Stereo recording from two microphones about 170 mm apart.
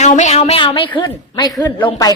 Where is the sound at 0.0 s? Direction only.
40° left (ahead or behind).